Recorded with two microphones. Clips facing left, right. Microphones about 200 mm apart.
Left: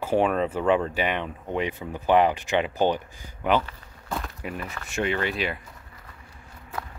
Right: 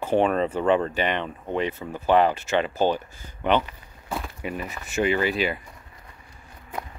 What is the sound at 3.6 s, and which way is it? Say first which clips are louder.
Speech: even; 5° right (ahead or behind).